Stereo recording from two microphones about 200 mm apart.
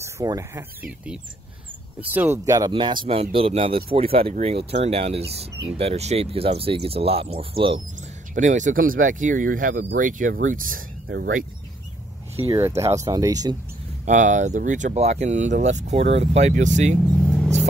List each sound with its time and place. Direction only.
0.0 s speech: 15° right (ahead or behind)
0.8 s speech: 5° right (ahead or behind); by 7.8 s 25° right (ahead or behind)
8.4 s speech: 40° right (ahead or behind)
12.5 s speech: 15° right (ahead or behind)
14.0 s speech: 40° right (ahead or behind)